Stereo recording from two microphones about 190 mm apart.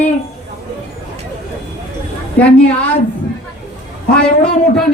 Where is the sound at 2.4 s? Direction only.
5° left (ahead or behind).